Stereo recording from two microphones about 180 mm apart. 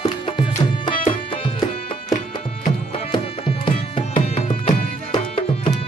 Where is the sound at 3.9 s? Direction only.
30° left (ahead or behind).